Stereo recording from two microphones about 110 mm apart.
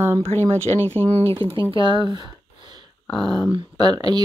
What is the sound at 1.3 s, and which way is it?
Speech, 55° right (ahead or behind).